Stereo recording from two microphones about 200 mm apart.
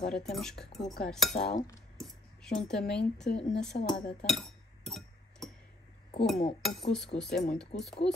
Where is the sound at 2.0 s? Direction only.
5° left (ahead or behind).